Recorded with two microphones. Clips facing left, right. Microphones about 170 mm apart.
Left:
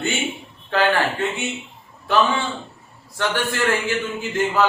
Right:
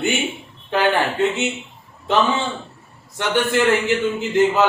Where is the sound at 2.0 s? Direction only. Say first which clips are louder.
Right 1 dB; 20° right (ahead or behind).